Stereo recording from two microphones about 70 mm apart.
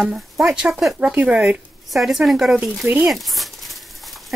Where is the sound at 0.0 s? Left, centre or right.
Centre.